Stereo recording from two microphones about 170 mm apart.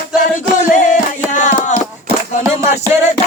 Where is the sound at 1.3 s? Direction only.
45° left (ahead or behind).